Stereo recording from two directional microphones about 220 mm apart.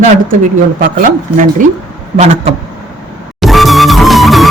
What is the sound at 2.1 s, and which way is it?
Speech, 30° right (ahead or behind).